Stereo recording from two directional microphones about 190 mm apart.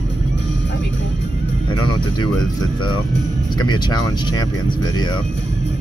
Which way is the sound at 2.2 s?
25° left (ahead or behind).